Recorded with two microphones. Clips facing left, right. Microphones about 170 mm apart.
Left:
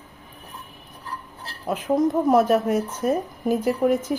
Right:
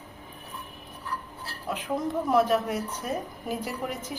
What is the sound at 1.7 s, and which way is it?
A woman's voice, 45° left (ahead or behind).